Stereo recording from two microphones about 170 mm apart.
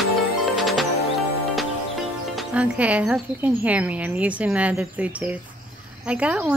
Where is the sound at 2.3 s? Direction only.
5° right (ahead or behind).